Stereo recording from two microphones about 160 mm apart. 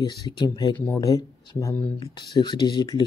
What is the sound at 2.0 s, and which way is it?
Speech, 25° left (ahead or behind).